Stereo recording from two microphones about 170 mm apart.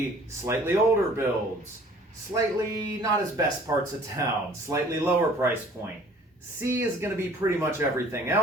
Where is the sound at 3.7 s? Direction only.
20° right (ahead or behind).